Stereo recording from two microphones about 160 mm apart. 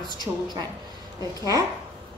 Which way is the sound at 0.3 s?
20° right (ahead or behind).